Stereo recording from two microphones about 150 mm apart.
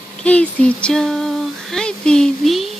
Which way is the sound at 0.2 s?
10° left (ahead or behind).